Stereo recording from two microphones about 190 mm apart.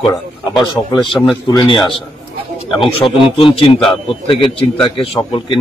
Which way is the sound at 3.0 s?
30° left (ahead or behind).